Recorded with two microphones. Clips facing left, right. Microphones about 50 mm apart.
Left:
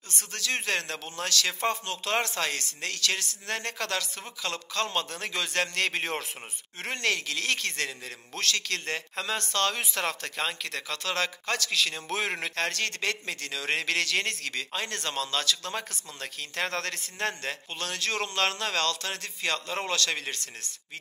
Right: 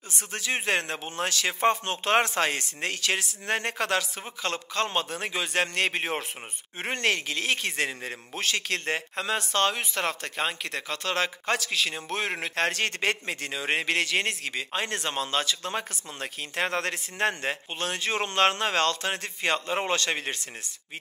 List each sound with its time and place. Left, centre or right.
0.3 s speech: centre
6.8 s speech: right
9.8 s speech: centre
12.5 s speech: right